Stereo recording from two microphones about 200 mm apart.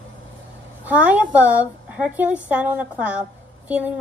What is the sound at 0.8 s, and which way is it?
A woman's voice, 5° right (ahead or behind).